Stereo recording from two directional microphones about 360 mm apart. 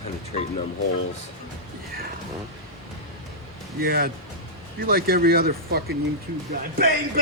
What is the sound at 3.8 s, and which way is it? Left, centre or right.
Speech, right.